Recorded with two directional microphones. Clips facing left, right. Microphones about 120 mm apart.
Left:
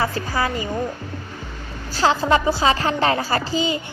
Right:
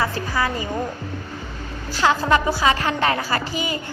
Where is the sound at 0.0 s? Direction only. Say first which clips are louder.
Even; 25° left (ahead or behind).